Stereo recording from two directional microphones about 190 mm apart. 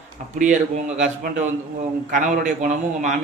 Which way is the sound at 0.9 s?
40° right (ahead or behind).